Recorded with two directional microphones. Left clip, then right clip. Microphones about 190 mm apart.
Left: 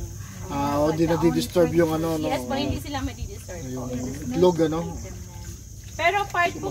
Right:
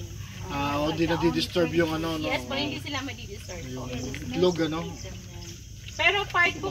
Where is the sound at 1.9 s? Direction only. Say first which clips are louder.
Left 4 dB; 25° left (ahead or behind).